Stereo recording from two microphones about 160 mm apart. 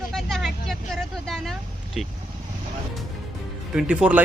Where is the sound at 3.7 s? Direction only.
5° right (ahead or behind).